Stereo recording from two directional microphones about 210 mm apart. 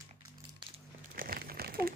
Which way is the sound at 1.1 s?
45° right (ahead or behind).